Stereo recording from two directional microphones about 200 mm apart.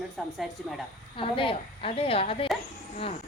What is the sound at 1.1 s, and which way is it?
A woman's voice, 25° left (ahead or behind).